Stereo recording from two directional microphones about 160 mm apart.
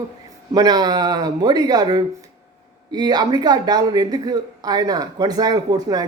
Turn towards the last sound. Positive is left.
turn(degrees=-25)  # may be behind; listen again after turning